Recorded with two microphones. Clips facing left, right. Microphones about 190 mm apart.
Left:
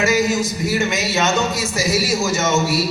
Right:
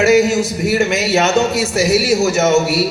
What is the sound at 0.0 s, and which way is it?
A man's voice, 65° right (ahead or behind).